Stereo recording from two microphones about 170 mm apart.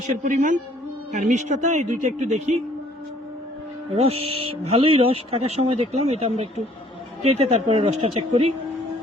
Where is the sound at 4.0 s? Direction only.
35° right (ahead or behind).